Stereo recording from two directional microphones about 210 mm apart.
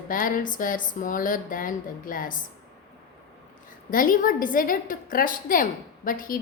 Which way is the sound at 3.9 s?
40° left (ahead or behind).